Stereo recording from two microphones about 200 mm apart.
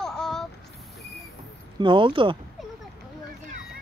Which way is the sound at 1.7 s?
25° right (ahead or behind).